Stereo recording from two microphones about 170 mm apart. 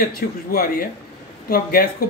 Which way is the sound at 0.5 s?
60° left (ahead or behind).